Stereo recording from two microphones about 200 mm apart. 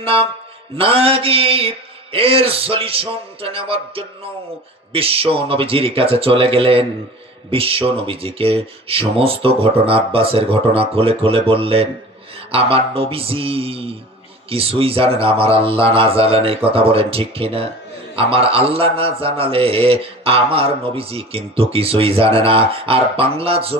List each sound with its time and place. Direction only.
0.0 s a man's voice: 30° right (ahead or behind)